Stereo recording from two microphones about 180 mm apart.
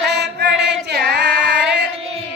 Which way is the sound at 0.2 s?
70° right (ahead or behind).